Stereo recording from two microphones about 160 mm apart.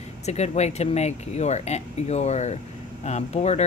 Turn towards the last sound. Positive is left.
turn(degrees=45)  # may be behind; listen again after turning